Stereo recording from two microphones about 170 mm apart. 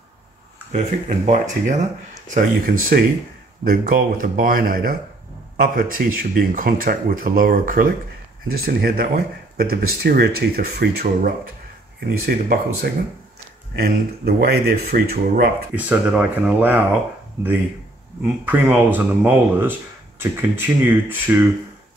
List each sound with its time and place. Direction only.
0.7 s speech: 45° right (ahead or behind)
2.3 s speech: 60° right (ahead or behind)
15.7 s speech: 10° right (ahead or behind)
18.4 s speech: 10° right (ahead or behind)